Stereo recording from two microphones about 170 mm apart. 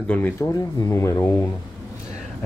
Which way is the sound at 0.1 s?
15° left (ahead or behind).